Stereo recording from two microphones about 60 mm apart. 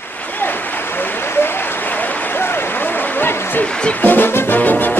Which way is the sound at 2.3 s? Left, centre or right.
Left.